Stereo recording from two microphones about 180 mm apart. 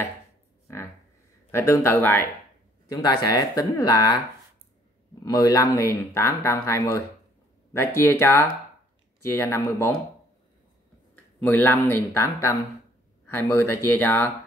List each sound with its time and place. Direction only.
1.5 s speech: 15° left (ahead or behind)
5.2 s speech: 20° left (ahead or behind)
11.3 s speech: 10° left (ahead or behind)